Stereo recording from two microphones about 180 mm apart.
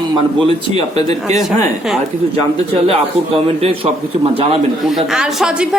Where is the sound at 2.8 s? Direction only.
35° right (ahead or behind).